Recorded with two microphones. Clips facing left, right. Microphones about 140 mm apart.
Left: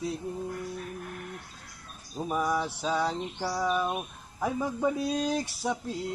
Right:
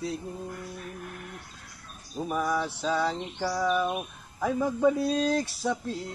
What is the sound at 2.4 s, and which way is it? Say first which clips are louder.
Mantra: right 1 dB; 15° left (ahead or behind).